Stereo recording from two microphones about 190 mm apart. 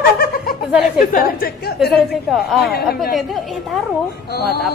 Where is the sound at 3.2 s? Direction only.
Centre (ahead or behind).